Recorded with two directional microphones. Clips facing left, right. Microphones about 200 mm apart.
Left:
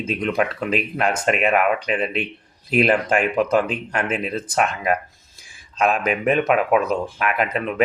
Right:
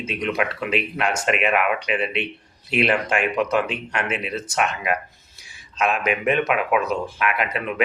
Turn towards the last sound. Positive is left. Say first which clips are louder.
# left 3 dB
turn(degrees=40)  # may be behind; listen again after turning